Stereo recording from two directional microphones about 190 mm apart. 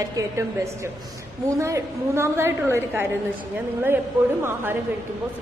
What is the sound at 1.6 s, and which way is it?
Speech, 15° right (ahead or behind).